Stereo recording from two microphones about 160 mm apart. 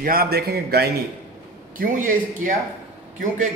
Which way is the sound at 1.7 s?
55° right (ahead or behind).